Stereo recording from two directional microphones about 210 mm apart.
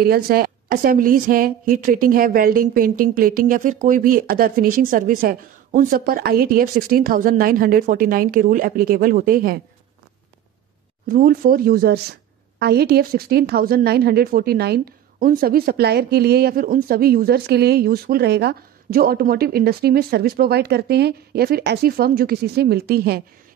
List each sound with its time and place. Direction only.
0.0 s a woman's voice: 45° right (ahead or behind)
11.1 s a woman's voice: 45° right (ahead or behind)